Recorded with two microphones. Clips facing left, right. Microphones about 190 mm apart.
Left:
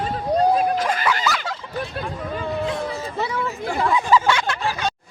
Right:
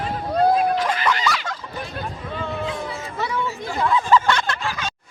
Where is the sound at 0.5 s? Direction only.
45° left (ahead or behind).